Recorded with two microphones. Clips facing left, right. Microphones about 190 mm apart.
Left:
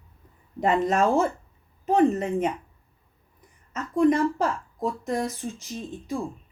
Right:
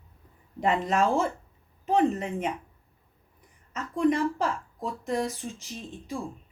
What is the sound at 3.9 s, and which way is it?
Speech, 45° left (ahead or behind).